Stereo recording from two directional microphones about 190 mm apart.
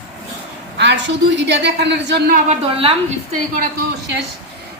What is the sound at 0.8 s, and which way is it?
A woman's voice, 70° right (ahead or behind).